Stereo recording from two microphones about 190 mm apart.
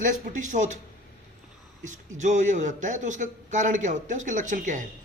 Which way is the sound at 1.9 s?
40° right (ahead or behind).